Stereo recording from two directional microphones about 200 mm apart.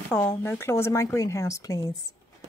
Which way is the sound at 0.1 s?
10° left (ahead or behind).